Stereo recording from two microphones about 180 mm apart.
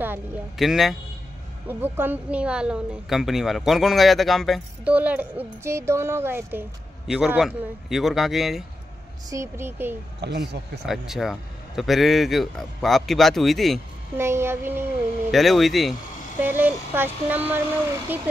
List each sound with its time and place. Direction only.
0.0 s speech: 10° right (ahead or behind)
0.6 s a man's voice: centre (ahead or behind)
1.7 s a man's voice: 10° right (ahead or behind)
9.3 s speech: 15° right (ahead or behind)
10.2 s speech: 70° right (ahead or behind)
10.9 s a man's voice: centre (ahead or behind)
14.1 s speech: 15° right (ahead or behind)
15.3 s a man's voice: centre (ahead or behind)